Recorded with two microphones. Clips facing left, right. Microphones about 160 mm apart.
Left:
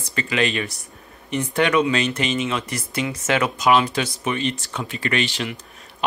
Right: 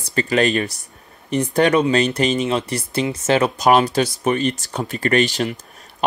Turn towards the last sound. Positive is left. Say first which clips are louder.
# right 6 dB
turn(degrees=-40)  # may be behind; listen again after turning